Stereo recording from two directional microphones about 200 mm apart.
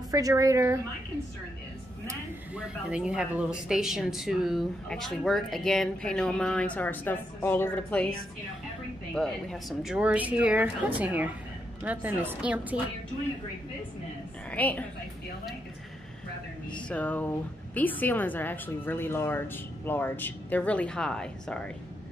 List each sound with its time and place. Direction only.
0.1 s speech: 15° right (ahead or behind)
2.0 s speech: 5° right (ahead or behind)
9.1 s speech: 5° left (ahead or behind)
14.5 s speech: 10° left (ahead or behind)
16.9 s speech: 10° left (ahead or behind)